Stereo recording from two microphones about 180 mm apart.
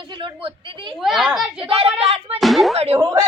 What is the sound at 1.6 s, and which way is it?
Speech, 30° right (ahead or behind).